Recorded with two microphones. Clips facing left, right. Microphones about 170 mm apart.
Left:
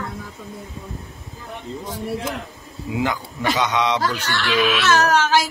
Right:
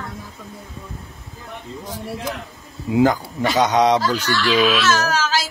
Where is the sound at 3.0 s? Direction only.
40° right (ahead or behind).